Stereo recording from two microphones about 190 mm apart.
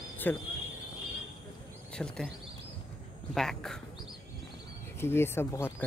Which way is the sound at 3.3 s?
Centre (ahead or behind).